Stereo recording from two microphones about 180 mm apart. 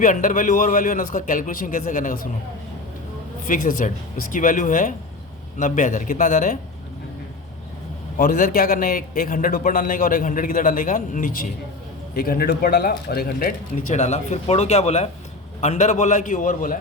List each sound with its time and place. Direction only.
0.0 s a man's voice: 45° left (ahead or behind)
3.4 s a man's voice: 50° left (ahead or behind)
8.2 s a man's voice: 50° left (ahead or behind)
14.0 s a man's voice: 35° left (ahead or behind)